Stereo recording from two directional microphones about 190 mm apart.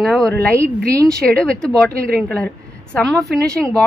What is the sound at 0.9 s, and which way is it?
Speech, 15° right (ahead or behind).